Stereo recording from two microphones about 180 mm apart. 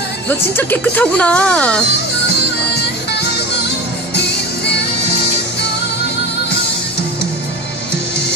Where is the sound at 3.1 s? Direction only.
70° left (ahead or behind).